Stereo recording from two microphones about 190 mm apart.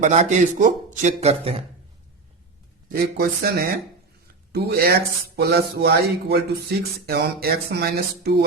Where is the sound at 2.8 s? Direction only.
50° right (ahead or behind).